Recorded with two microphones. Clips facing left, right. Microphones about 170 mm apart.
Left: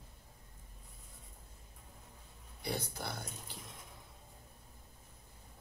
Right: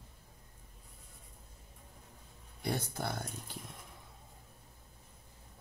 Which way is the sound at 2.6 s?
50° right (ahead or behind).